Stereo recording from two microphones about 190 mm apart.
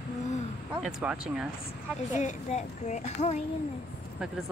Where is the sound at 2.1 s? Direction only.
40° left (ahead or behind).